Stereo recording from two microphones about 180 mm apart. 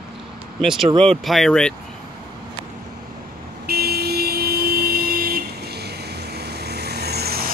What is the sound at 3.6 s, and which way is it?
Vehicle, 60° right (ahead or behind).